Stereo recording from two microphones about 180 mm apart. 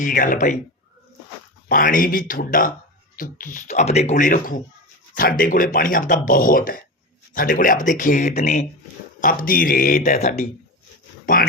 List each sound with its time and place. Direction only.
0.0 s speech: 50° left (ahead or behind)
1.6 s speech: 50° left (ahead or behind)
11.4 s speech: 55° left (ahead or behind)